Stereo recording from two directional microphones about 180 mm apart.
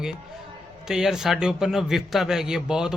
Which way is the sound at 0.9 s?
5° right (ahead or behind).